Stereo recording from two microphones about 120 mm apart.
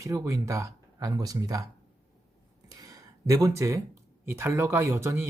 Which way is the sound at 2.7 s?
30° right (ahead or behind).